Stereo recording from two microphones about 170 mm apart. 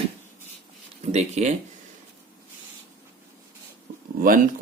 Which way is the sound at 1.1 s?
40° right (ahead or behind).